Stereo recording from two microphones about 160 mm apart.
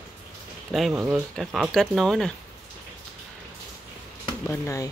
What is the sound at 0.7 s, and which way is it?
Speech, 5° right (ahead or behind).